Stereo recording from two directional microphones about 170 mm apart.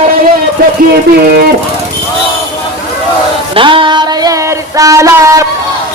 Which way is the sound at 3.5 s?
30° right (ahead or behind).